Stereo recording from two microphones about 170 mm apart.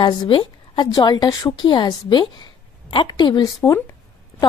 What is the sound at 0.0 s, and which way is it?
A woman's voice, 30° left (ahead or behind).